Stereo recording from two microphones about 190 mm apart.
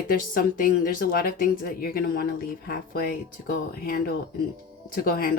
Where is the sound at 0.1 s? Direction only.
50° left (ahead or behind).